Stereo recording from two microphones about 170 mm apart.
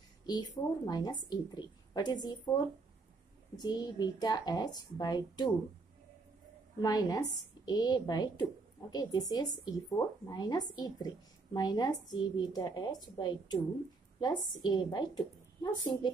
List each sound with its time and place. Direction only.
0.3 s a woman's voice: 25° left (ahead or behind)
6.8 s a woman's voice: 25° left (ahead or behind)